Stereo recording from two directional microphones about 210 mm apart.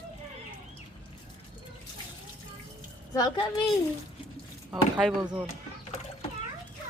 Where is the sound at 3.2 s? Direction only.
20° left (ahead or behind).